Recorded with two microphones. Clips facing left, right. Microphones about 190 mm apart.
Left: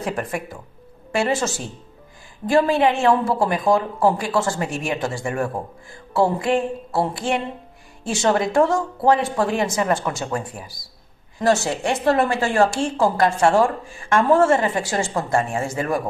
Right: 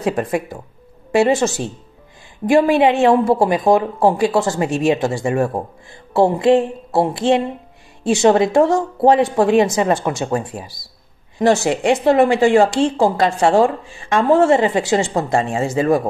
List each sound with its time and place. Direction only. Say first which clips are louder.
0.0 s speech: right 6 dB; 20° right (ahead or behind)